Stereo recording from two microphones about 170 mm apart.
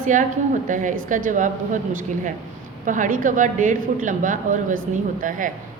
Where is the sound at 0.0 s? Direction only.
50° right (ahead or behind).